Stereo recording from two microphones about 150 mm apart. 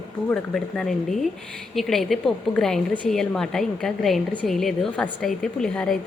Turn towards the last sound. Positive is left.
turn(degrees=5)  # may be behind; listen again after turning